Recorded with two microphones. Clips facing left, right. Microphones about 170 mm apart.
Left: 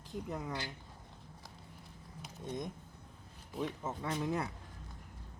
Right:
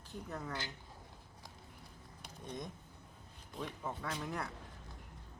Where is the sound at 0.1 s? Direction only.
15° left (ahead or behind).